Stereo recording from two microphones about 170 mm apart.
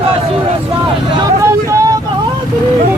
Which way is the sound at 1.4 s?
15° right (ahead or behind).